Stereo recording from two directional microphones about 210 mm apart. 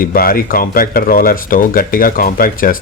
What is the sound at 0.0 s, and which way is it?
Speech, 45° left (ahead or behind).